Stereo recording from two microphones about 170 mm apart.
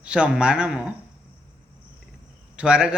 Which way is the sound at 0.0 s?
5° right (ahead or behind).